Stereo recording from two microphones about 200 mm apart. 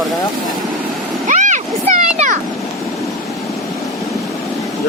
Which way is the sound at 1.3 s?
40° right (ahead or behind).